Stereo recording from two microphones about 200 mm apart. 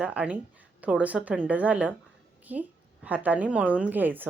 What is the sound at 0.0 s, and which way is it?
A woman's voice, 5° right (ahead or behind).